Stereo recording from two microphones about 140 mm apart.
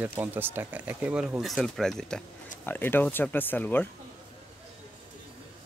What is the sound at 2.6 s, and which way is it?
Speech, 15° left (ahead or behind).